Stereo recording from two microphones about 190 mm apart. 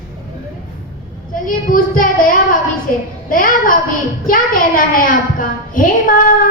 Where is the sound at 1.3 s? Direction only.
45° left (ahead or behind).